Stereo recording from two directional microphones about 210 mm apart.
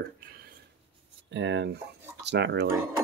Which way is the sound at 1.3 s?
60° right (ahead or behind).